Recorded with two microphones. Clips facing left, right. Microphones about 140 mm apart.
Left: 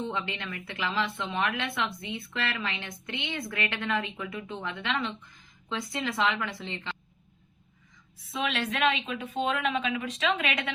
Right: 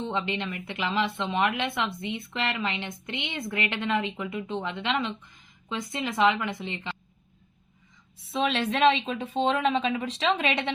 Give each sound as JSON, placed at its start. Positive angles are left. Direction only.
{"t": 0.0, "sound": "speech", "side_deg": -20}
{"t": 8.3, "sound": "a woman's voice", "side_deg": -30}